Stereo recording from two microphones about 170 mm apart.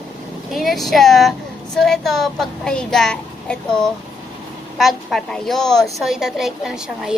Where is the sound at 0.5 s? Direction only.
Centre (ahead or behind).